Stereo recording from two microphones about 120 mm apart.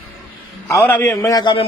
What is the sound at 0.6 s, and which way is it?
Speech, 20° left (ahead or behind).